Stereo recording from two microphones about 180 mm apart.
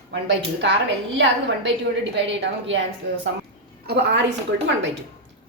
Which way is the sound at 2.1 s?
80° right.